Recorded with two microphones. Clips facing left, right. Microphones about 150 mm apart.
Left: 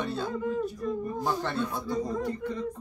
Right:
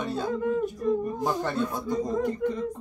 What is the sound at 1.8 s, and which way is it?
Speech, 20° right (ahead or behind).